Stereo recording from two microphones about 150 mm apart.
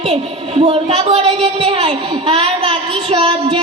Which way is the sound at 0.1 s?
45° right (ahead or behind).